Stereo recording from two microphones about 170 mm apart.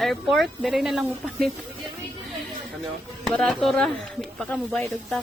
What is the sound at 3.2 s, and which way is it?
Speech, centre (ahead or behind).